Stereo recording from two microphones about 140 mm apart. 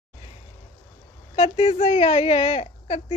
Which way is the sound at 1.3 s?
50° left (ahead or behind).